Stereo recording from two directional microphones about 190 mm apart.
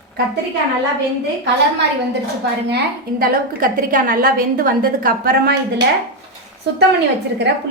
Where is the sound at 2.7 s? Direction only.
50° right (ahead or behind).